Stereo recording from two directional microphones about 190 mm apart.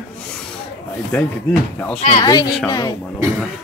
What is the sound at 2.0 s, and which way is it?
Speech, 35° left (ahead or behind).